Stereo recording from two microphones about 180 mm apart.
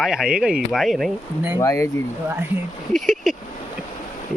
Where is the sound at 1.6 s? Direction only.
15° left (ahead or behind).